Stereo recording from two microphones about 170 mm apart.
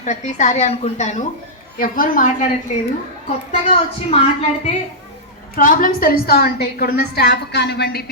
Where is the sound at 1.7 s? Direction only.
55° left (ahead or behind).